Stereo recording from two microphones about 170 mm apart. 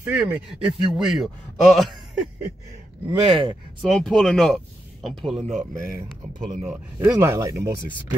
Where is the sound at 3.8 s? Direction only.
Centre (ahead or behind).